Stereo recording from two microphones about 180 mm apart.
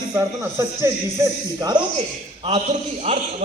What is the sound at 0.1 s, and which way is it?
Speech, 15° right (ahead or behind).